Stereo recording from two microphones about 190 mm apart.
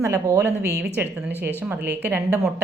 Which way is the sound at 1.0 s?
5° right (ahead or behind).